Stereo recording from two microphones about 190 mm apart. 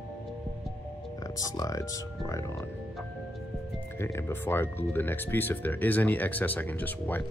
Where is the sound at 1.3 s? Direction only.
20° left (ahead or behind).